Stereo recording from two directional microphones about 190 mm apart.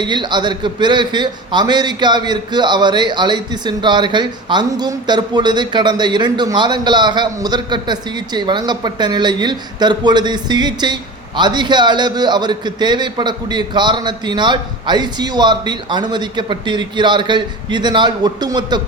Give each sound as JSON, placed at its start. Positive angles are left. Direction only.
{"t": 0.0, "sound": "a man's voice", "side_deg": -25}